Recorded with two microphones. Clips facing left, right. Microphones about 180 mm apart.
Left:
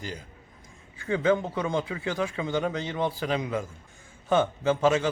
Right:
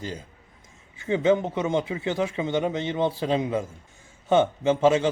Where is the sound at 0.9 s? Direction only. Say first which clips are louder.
Right 3 dB; 20° right (ahead or behind).